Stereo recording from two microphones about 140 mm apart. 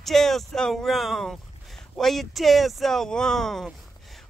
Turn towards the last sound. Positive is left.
turn(degrees=5)  # may be behind; listen again after turning